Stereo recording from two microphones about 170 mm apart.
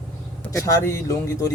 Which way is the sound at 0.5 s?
15° left (ahead or behind).